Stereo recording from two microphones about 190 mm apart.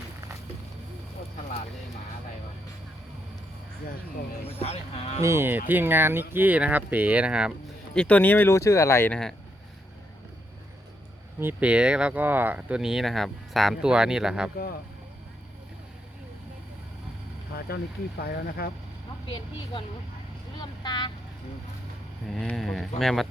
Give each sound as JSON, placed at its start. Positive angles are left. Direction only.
{"t": 4.6, "sound": "speech", "side_deg": 35}
{"t": 5.2, "sound": "speech", "side_deg": -15}
{"t": 7.9, "sound": "speech", "side_deg": 5}
{"t": 11.3, "sound": "speech", "side_deg": -10}
{"t": 18.2, "sound": "speech", "side_deg": 55}
{"t": 20.6, "sound": "vehicle", "side_deg": 25}
{"t": 22.3, "sound": "speech", "side_deg": 0}